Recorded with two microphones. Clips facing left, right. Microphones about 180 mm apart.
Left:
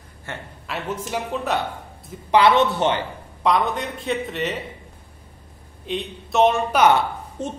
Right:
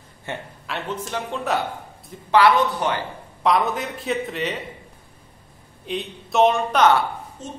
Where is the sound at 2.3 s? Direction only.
25° left (ahead or behind).